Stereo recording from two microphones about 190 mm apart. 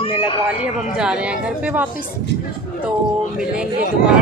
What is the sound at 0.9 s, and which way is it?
Speech, 5° right (ahead or behind).